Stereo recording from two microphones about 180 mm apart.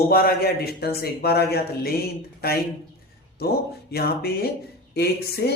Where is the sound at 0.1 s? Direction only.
55° left (ahead or behind).